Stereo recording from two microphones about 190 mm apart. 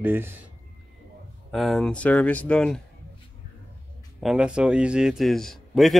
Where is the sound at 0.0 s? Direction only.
10° right (ahead or behind).